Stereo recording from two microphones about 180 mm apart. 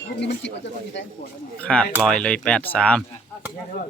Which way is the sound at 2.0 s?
5° left (ahead or behind).